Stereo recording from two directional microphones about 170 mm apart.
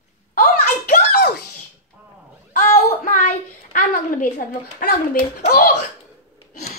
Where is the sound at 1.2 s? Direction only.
75° left (ahead or behind).